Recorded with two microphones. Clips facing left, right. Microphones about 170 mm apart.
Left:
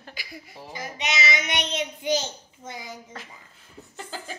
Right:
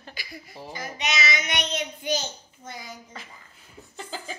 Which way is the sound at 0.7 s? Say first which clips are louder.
Even; 20° left (ahead or behind).